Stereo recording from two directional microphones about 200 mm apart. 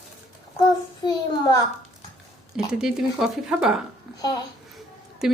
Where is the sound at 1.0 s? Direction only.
20° left (ahead or behind).